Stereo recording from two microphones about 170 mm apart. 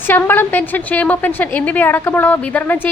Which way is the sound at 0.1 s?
10° left (ahead or behind).